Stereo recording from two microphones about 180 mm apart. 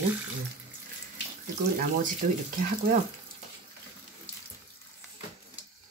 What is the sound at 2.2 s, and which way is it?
Speech, 45° right (ahead or behind).